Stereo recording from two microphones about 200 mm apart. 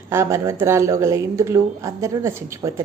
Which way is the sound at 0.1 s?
15° right (ahead or behind).